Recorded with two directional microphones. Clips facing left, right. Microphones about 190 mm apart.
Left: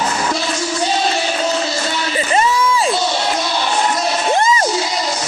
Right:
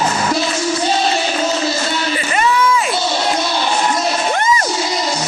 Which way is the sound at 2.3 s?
30° left (ahead or behind).